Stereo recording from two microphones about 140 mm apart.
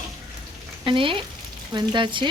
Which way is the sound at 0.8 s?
40° right (ahead or behind).